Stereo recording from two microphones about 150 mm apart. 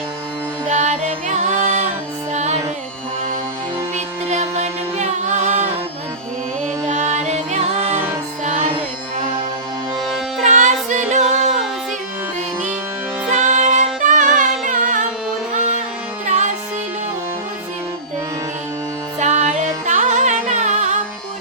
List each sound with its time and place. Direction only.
0.7 s music: 50° right (ahead or behind)
3.9 s music: 45° right (ahead or behind)
6.8 s music: 50° right (ahead or behind)
7.9 s music: 15° right (ahead or behind)
8.4 s music: 45° right (ahead or behind)
10.4 s music: 55° right (ahead or behind)
13.3 s music: 50° right (ahead or behind)
16.2 s music: 55° right (ahead or behind)
19.2 s music: 50° right (ahead or behind)